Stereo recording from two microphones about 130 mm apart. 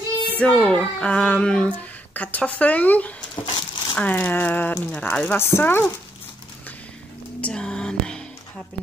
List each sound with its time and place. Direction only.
0.4 s speech: 10° left (ahead or behind)
3.4 s a sound: 35° left (ahead or behind)
3.9 s speech: 15° left (ahead or behind)
7.4 s whispering: 5° left (ahead or behind)